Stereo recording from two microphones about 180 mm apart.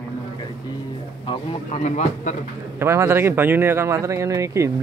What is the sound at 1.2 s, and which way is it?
Speech, 35° left (ahead or behind).